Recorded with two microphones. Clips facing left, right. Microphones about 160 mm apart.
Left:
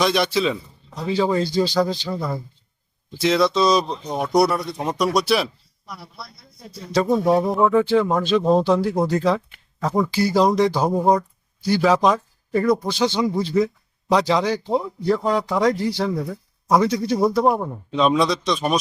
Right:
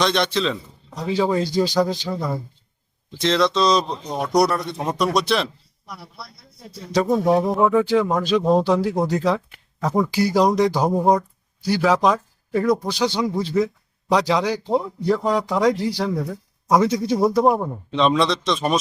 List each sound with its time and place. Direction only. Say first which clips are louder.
0.0 s a man's voice: left 1 dB; 5° left (ahead or behind)
1.1 s speech: even; 5° right (ahead or behind)
2.1 s speech: right 1 dB; 5° left (ahead or behind)
7.3 s speech: even; 5° right (ahead or behind)
15.7 s speech: even; 10° right (ahead or behind)